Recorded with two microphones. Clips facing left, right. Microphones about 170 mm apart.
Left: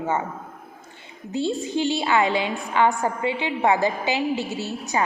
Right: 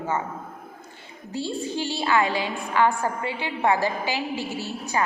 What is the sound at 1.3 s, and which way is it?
A woman's voice, 20° left (ahead or behind).